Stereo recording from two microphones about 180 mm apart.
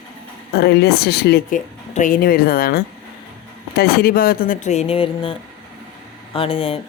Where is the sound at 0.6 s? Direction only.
60° left (ahead or behind).